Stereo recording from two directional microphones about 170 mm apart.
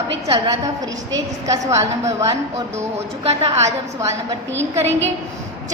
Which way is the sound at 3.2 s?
35° right (ahead or behind).